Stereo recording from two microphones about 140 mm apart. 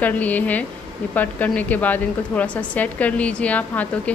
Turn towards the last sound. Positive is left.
turn(degrees=10)  # may be behind; listen again after turning